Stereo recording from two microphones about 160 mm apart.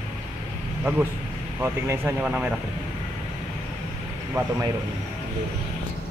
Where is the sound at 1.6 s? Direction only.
15° right (ahead or behind).